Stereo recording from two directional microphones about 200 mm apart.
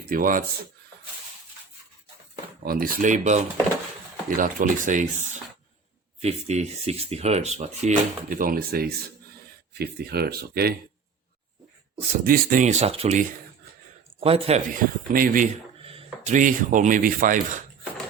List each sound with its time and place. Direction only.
0.1 s speech: 45° right (ahead or behind)
2.6 s speech: 45° right (ahead or behind)
12.2 s a man's voice: 45° right (ahead or behind); by 14.6 s 30° right (ahead or behind)
14.8 s speech: 45° right (ahead or behind)
15.8 s a sound: 30° right (ahead or behind)
16.2 s speech: 40° right (ahead or behind)